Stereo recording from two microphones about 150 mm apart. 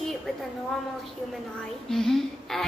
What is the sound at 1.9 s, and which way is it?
Speech, centre (ahead or behind).